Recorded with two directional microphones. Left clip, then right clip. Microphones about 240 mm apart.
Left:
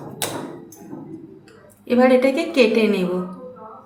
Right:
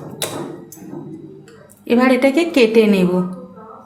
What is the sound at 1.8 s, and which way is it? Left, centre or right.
A woman's voice, right.